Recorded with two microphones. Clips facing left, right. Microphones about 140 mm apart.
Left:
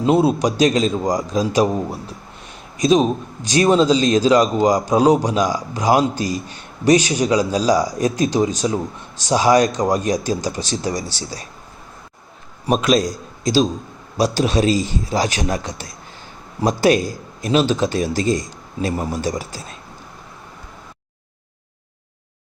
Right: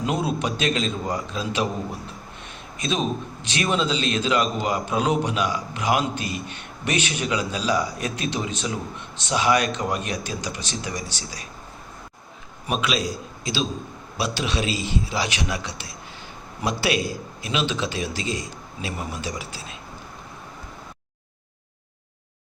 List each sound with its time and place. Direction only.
0.0 s a man's voice: 30° left (ahead or behind)
12.6 s a man's voice: 40° left (ahead or behind)